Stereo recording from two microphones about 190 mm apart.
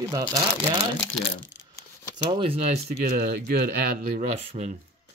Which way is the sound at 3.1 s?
55° right (ahead or behind).